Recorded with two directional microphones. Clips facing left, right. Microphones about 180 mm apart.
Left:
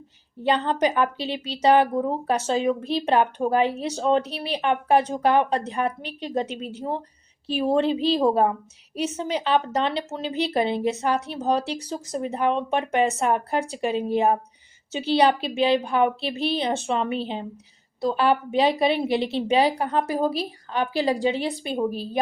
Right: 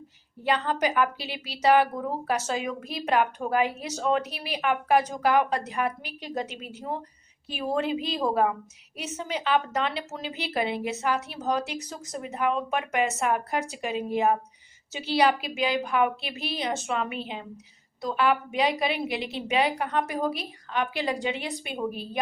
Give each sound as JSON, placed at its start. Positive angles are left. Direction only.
{"t": 0.4, "sound": "a woman's voice", "side_deg": 30}